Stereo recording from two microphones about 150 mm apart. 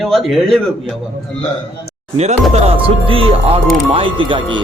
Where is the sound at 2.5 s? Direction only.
40° right (ahead or behind).